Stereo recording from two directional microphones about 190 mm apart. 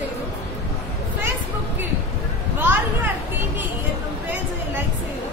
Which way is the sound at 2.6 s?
10° right (ahead or behind).